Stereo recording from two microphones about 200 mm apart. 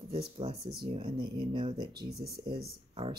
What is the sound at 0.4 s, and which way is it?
Speech, 30° right (ahead or behind).